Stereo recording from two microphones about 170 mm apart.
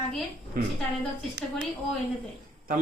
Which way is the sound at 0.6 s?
55° right (ahead or behind).